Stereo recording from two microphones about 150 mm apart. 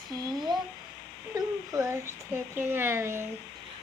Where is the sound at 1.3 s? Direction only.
20° right (ahead or behind).